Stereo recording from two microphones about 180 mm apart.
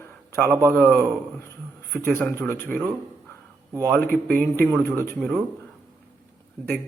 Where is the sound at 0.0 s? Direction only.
10° left (ahead or behind).